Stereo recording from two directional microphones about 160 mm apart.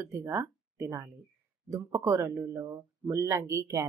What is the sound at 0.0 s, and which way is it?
Speech, 15° right (ahead or behind).